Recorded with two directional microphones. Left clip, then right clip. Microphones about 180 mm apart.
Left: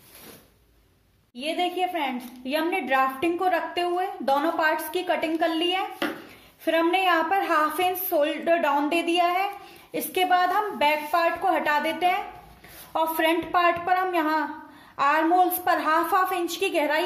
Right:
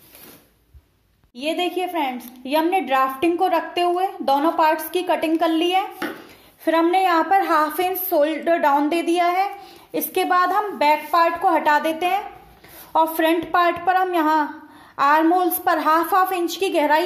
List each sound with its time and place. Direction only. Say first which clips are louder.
1.3 s a woman's voice: right 4 dB; 30° right (ahead or behind)